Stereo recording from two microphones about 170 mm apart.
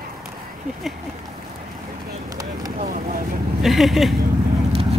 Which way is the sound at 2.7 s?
60° right (ahead or behind).